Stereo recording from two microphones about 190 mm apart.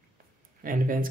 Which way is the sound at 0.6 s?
45° right (ahead or behind).